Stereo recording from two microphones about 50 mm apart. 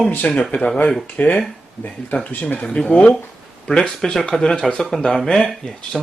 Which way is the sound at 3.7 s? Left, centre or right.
Centre.